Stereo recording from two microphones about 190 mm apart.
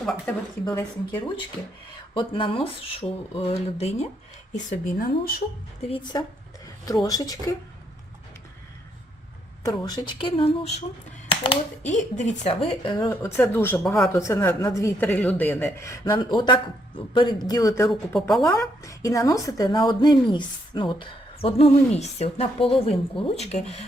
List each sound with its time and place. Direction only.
0.3 s speech: 10° left (ahead or behind)
0.6 s speech: 20° left (ahead or behind); by 5.4 s 50° left (ahead or behind)
5.9 s speech: 25° left (ahead or behind)
9.6 s speech: 20° left (ahead or behind); by 12.5 s 40° left (ahead or behind)
12.6 s speech: 25° left (ahead or behind)
13.3 s speech: 10° left (ahead or behind)
14.1 s speech: 15° left (ahead or behind)
18.1 s a woman's voice: centre (ahead or behind)
18.8 s speech: 15° left (ahead or behind); by 23.8 s 35° left (ahead or behind)